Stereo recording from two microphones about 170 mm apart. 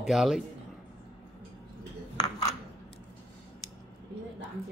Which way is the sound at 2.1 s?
20° left (ahead or behind).